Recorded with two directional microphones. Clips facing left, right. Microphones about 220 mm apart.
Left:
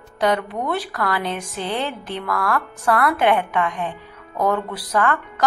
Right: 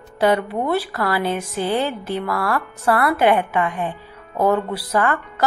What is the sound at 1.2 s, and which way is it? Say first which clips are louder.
A woman's voice: right 4 dB; centre (ahead or behind).